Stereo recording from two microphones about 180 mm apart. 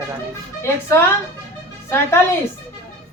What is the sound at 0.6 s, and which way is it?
Speech, 15° left (ahead or behind).